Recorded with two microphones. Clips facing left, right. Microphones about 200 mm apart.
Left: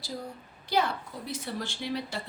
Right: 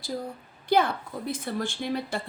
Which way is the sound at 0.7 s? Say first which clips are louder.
Right 5 dB; 55° right (ahead or behind).